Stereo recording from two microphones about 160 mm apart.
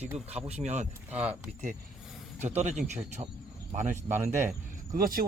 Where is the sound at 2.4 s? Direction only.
45° right (ahead or behind).